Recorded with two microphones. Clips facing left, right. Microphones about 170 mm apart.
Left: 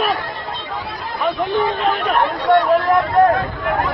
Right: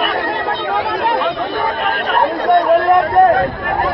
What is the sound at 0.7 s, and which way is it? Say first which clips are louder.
Chatter: right 12 dB; 75° right (ahead or behind).